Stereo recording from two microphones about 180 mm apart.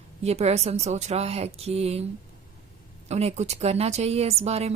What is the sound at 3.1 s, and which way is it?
A woman's voice, 35° right (ahead or behind).